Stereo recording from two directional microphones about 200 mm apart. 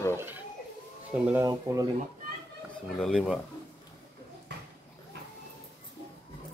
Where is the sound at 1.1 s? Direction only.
5° right (ahead or behind).